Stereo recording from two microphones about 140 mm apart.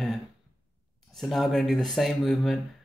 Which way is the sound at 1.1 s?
Centre (ahead or behind).